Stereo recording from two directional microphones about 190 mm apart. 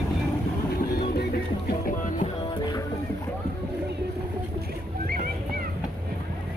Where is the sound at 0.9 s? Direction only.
55° left (ahead or behind).